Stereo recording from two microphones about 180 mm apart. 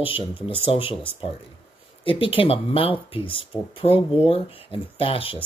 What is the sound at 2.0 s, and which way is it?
Speech, 30° left (ahead or behind).